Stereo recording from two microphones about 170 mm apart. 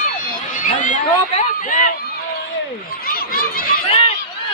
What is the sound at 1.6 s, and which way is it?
Run, 50° left (ahead or behind).